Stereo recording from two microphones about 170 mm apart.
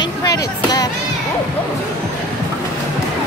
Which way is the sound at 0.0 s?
20° left (ahead or behind).